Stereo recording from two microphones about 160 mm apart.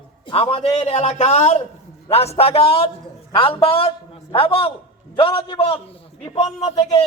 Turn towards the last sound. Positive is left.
turn(degrees=40)  # may be behind; listen again after turning